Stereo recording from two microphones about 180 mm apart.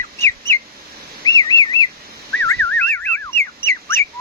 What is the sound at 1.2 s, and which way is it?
Bird, 20° left (ahead or behind).